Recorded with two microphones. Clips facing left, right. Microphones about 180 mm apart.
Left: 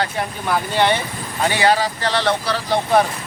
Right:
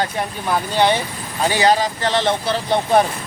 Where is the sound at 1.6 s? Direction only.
20° right (ahead or behind).